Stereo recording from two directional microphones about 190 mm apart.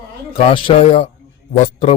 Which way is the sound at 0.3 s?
30° left (ahead or behind).